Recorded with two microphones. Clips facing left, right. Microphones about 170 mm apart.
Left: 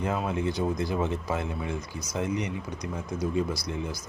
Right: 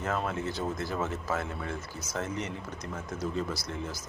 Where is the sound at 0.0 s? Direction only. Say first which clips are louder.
Left 3 dB; 15° left (ahead or behind).